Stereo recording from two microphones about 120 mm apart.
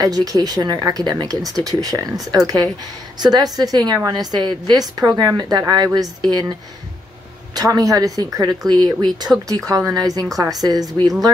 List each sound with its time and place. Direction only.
0.0 s a woman's voice: 30° right (ahead or behind)
7.5 s a woman's voice: 30° right (ahead or behind)